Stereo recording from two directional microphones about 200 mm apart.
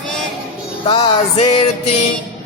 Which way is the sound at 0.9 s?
25° left (ahead or behind).